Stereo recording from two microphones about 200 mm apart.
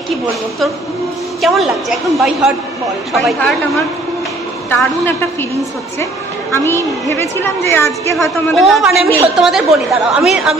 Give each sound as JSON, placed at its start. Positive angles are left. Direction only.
{"t": 1.4, "sound": "a woman's voice", "side_deg": 0}
{"t": 4.6, "sound": "a woman's voice", "side_deg": 10}
{"t": 6.5, "sound": "a woman's voice", "side_deg": 10}
{"t": 8.5, "sound": "a woman's voice", "side_deg": 0}